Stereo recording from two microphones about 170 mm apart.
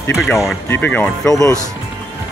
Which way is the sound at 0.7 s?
10° left (ahead or behind).